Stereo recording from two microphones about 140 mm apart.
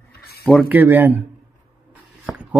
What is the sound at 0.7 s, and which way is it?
Speech, 15° right (ahead or behind).